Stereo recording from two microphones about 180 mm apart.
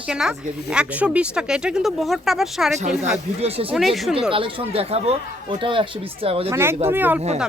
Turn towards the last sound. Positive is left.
turn(degrees=-10)  # may be behind; listen again after turning